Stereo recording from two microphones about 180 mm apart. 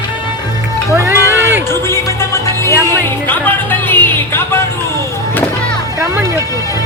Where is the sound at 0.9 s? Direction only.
15° right (ahead or behind).